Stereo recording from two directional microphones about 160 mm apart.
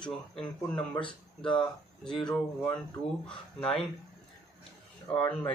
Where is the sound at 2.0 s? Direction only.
5° left (ahead or behind).